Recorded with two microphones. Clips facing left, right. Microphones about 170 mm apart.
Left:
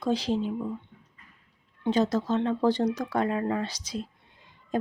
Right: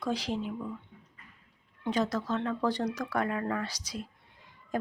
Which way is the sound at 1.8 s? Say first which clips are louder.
Left 5 dB; 25° left (ahead or behind).